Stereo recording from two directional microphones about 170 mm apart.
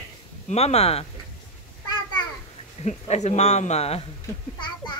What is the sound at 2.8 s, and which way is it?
Speech, 40° left (ahead or behind).